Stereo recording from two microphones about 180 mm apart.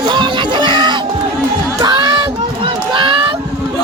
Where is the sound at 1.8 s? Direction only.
25° right (ahead or behind).